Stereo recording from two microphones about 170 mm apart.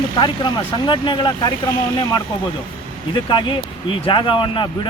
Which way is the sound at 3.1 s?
25° left (ahead or behind).